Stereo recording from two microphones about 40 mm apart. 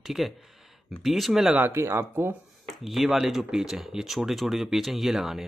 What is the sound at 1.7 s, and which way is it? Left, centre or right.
Speech, right.